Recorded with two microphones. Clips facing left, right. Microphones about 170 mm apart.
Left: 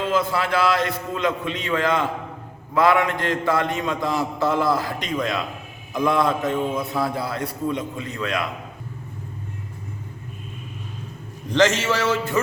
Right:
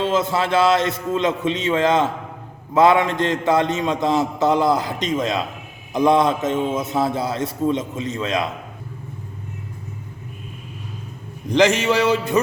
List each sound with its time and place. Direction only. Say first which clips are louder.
0.0 s a man's voice: right 2 dB; 25° right (ahead or behind)
11.4 s a man's voice: right 3 dB; 15° right (ahead or behind)